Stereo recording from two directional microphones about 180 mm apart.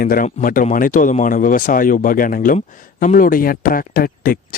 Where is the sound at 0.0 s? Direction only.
50° left (ahead or behind).